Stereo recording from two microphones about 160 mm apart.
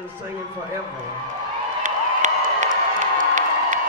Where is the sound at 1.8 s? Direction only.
50° right (ahead or behind).